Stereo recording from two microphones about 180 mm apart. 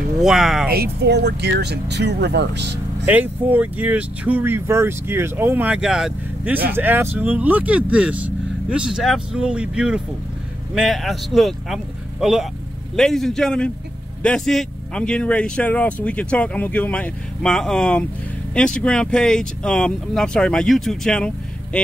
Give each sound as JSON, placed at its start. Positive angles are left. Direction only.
{"t": 0.2, "sound": "speech", "side_deg": 0}
{"t": 0.7, "sound": "speech", "side_deg": -60}
{"t": 3.1, "sound": "speech", "side_deg": -10}